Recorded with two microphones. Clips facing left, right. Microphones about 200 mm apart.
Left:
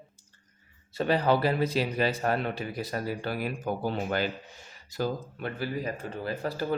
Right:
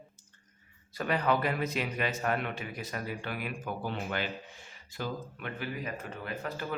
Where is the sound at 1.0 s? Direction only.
30° left (ahead or behind).